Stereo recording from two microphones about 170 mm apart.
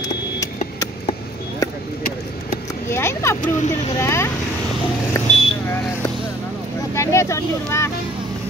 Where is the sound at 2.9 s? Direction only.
15° left (ahead or behind).